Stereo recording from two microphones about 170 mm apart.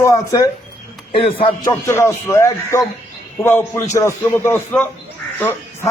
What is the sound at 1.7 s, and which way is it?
Speech, 15° left (ahead or behind).